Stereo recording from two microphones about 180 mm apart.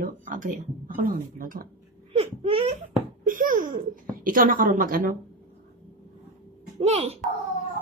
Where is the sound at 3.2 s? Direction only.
50° right (ahead or behind).